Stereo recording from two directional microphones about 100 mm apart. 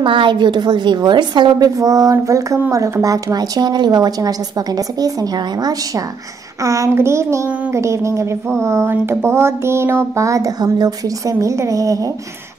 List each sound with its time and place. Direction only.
0.0 s a woman's voice: 55° right (ahead or behind); by 6.0 s 40° right (ahead or behind)
6.6 s a sound: 35° right (ahead or behind)
11.3 s a woman's voice: 30° right (ahead or behind)